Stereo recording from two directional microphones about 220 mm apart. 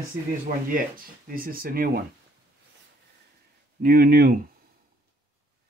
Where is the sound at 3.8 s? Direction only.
40° right (ahead or behind).